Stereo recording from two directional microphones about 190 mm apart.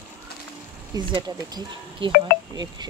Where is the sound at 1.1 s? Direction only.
25° right (ahead or behind).